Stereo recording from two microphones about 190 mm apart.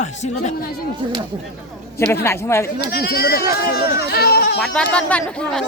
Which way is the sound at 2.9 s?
55° left (ahead or behind).